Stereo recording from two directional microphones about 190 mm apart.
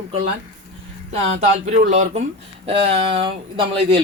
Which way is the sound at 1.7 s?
35° right (ahead or behind).